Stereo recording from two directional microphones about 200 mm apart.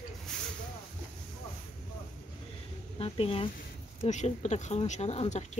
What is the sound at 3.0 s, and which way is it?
Speech, 30° left (ahead or behind).